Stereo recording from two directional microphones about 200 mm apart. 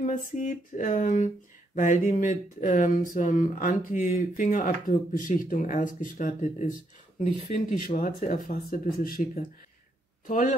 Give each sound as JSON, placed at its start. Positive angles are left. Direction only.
{"t": 0.0, "sound": "speech", "side_deg": 40}